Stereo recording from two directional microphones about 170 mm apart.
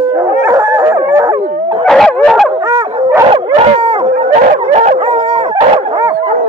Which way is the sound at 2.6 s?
15° right (ahead or behind).